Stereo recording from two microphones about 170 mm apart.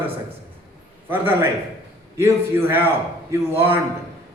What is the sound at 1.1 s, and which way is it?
A man's voice, 10° right (ahead or behind).